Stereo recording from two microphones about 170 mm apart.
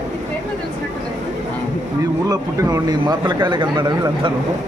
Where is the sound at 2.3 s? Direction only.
20° right (ahead or behind).